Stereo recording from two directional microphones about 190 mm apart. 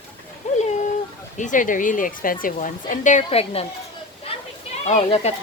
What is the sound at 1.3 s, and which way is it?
A woman's voice, 40° left (ahead or behind).